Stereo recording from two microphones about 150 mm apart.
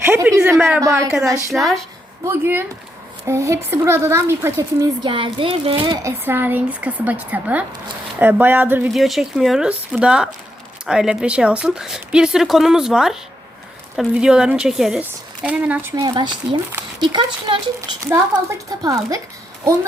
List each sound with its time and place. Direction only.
0.0 s a sound: 15° right (ahead or behind)
0.8 s speech: 20° right (ahead or behind)
1.5 s speech: centre (ahead or behind)
2.2 s speech: 15° right (ahead or behind)
5.0 s a child's voice: 35° right (ahead or behind)
6.0 s speech: 15° right (ahead or behind)
8.9 s speech: centre (ahead or behind)
16.0 s speech: 30° right (ahead or behind)